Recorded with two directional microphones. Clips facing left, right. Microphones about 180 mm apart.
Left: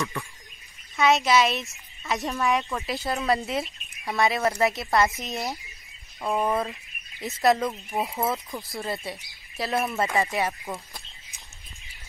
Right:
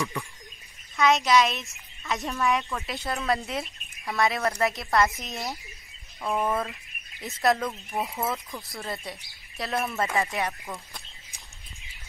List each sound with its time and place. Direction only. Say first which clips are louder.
0.9 s speech: left 1 dB; centre (ahead or behind)
6.3 s speech: left 2 dB; 15° left (ahead or behind)
6.6 s a sound: left 2 dB; centre (ahead or behind)
7.5 s speech: left 3 dB; 15° left (ahead or behind)
8.6 s speech: left 4 dB; centre (ahead or behind)